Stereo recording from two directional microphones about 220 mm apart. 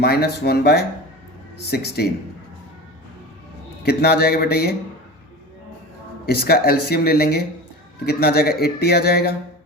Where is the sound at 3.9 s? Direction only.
45° left (ahead or behind).